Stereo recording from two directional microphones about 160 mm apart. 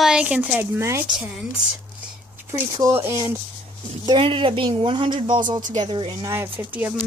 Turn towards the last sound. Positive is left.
turn(degrees=-10)  # may be behind; listen again after turning